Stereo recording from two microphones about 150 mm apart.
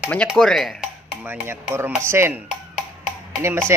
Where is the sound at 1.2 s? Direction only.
15° right (ahead or behind).